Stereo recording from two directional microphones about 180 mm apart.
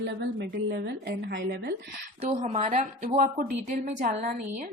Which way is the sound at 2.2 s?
40° right (ahead or behind).